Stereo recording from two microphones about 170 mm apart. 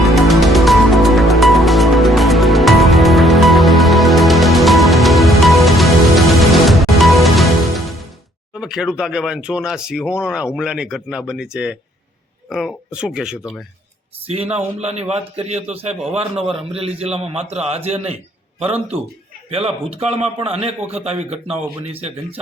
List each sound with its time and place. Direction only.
0.0 s music: centre (ahead or behind)
8.5 s speech: 5° right (ahead or behind)
14.5 s a man's voice: 40° right (ahead or behind)
19.5 s a man's voice: 35° right (ahead or behind)